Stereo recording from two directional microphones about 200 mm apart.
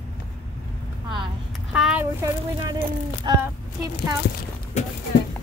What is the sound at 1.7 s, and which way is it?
Speech, 5° right (ahead or behind).